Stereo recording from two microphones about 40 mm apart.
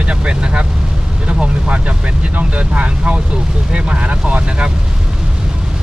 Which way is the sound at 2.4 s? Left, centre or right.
Right.